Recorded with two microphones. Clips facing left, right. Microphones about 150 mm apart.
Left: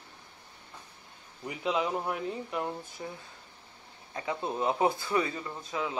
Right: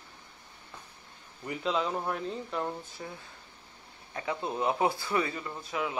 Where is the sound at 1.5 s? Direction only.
15° left (ahead or behind).